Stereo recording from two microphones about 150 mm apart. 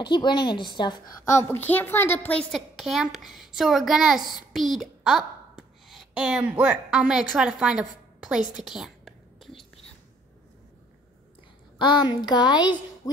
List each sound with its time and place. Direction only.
0.0 s a woman's voice: 30° left (ahead or behind); by 8.5 s 5° right (ahead or behind)
8.5 s whispering: 5° right (ahead or behind)
11.8 s speech: 30° left (ahead or behind)